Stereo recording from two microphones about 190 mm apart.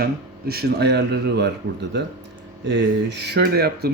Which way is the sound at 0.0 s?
55° right (ahead or behind).